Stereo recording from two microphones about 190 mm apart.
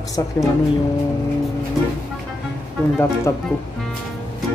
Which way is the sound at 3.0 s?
10° left (ahead or behind).